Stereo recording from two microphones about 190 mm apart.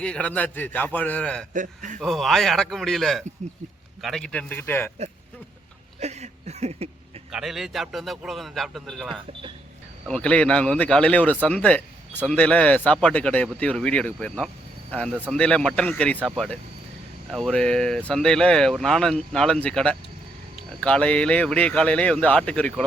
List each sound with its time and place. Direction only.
0.0 s a man's voice: 5° left (ahead or behind)
1.5 s a man's voice: 40° right (ahead or behind)
2.0 s a man's voice: centre (ahead or behind)
6.0 s a sound: 35° right (ahead or behind)
7.3 s a man's voice: 5° right (ahead or behind)